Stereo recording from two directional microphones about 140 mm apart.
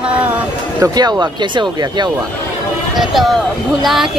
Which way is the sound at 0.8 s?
30° right (ahead or behind).